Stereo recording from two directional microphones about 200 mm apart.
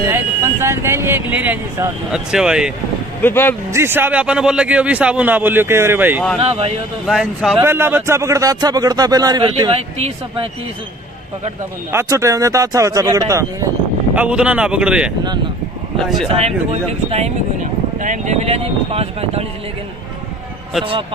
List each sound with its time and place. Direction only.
0.1 s speech: 15° right (ahead or behind)
3.2 s speech: 10° left (ahead or behind)
3.7 s speech: 10° right (ahead or behind)
6.4 s speech: 30° right (ahead or behind)
7.1 s speech: centre (ahead or behind)
7.6 s speech: 10° right (ahead or behind); by 10.5 s 25° right (ahead or behind)
11.9 s speech: 15° right (ahead or behind)
16.3 s speech: 30° right (ahead or behind)